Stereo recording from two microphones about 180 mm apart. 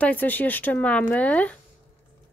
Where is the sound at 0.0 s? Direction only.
10° left (ahead or behind).